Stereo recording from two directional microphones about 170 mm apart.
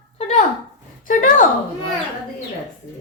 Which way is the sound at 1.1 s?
50° left (ahead or behind).